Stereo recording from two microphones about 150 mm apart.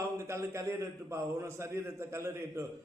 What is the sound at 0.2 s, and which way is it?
A man's voice, 20° right (ahead or behind).